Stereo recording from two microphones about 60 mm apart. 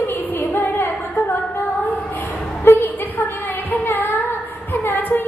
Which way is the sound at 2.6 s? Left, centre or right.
Left.